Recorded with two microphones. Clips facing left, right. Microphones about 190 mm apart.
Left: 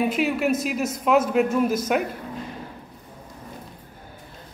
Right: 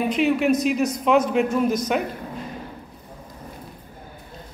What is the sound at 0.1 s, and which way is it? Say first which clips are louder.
A man's voice: right 3 dB; 5° left (ahead or behind).